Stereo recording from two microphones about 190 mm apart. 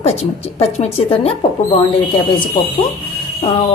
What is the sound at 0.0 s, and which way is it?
Speech, 35° left (ahead or behind).